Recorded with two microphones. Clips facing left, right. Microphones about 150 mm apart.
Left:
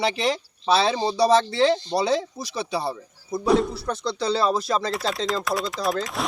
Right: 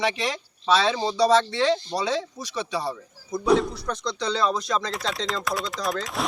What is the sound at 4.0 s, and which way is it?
Speech, 30° left (ahead or behind).